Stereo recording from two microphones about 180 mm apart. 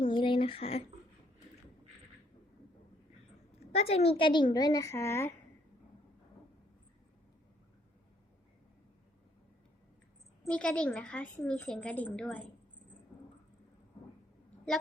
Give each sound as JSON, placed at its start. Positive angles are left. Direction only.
{"t": 0.0, "sound": "a sound", "side_deg": 30}
{"t": 3.8, "sound": "a woman's voice", "side_deg": 35}
{"t": 10.4, "sound": "a woman's voice", "side_deg": 5}